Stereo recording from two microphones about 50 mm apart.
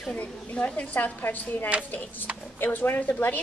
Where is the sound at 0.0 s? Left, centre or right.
Left.